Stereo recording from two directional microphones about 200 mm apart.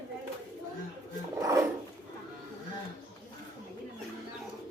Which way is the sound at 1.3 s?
15° right (ahead or behind).